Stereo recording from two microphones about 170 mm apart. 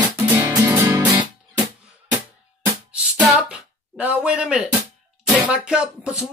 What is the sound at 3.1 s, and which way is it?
Music, 10° right (ahead or behind).